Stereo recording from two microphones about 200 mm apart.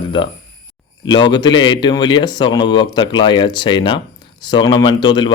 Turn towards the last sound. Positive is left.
turn(degrees=25)  # may be behind; listen again after turning